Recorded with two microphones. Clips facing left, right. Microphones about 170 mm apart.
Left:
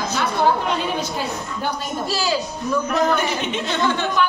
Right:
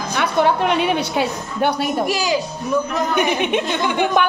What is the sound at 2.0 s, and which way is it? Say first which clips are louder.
Speech: right 3 dB; 15° right (ahead or behind).